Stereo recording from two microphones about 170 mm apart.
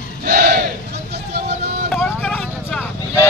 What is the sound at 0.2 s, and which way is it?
Battle cry, 60° right (ahead or behind).